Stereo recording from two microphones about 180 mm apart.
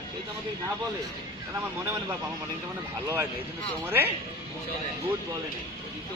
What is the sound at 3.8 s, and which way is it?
Speech, 10° right (ahead or behind).